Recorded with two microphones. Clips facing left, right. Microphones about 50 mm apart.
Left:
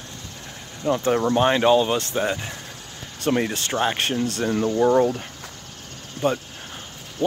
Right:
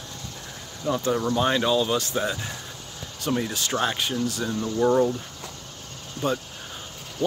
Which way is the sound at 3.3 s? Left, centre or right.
Left.